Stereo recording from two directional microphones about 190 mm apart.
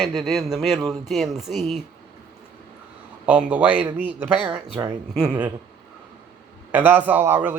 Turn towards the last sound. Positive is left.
turn(degrees=-10)  # may be behind; listen again after turning